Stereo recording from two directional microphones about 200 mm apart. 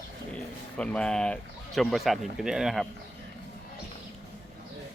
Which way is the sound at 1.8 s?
Centre (ahead or behind).